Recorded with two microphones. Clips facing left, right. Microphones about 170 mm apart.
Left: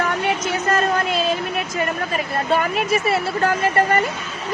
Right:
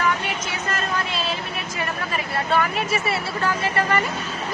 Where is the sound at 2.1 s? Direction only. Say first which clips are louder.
Left 1 dB; 45° left (ahead or behind).